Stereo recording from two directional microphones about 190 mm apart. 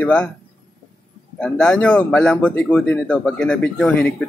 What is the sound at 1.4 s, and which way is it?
Speech, 5° left (ahead or behind).